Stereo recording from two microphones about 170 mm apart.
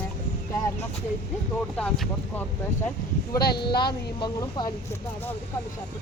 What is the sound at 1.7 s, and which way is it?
Speech, centre (ahead or behind).